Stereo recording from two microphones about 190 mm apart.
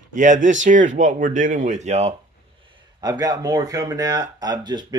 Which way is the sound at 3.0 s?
20° right (ahead or behind).